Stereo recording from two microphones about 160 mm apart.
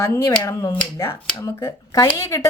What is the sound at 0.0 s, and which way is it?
Speech, 20° left (ahead or behind).